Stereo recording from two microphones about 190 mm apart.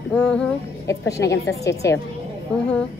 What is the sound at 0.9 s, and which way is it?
A woman's voice, 15° left (ahead or behind).